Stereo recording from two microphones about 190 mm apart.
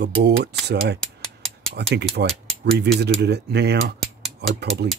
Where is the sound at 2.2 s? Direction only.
50° right (ahead or behind).